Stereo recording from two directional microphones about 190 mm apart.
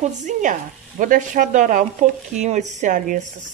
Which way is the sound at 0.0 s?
40° right (ahead or behind).